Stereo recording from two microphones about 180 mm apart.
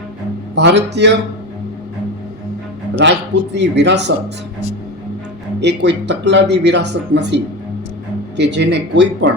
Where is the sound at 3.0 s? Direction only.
75° right (ahead or behind).